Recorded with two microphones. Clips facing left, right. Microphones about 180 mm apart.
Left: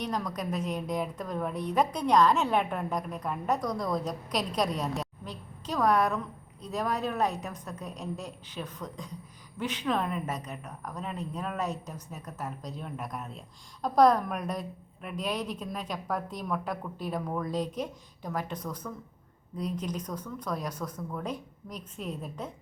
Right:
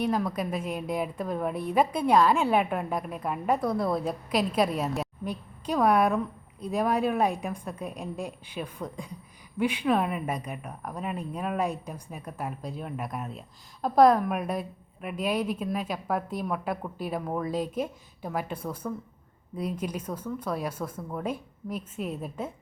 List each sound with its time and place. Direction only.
0.0 s speech: 5° right (ahead or behind)
18.8 s speech: 20° right (ahead or behind)
19.5 s speech: 10° right (ahead or behind)
20.9 s speech: 20° right (ahead or behind)
21.2 s speech: 5° right (ahead or behind)